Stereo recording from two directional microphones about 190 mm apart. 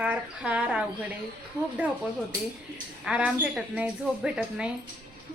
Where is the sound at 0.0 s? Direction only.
5° right (ahead or behind).